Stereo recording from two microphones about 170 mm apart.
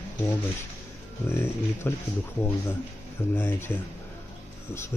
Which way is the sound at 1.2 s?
15° left (ahead or behind).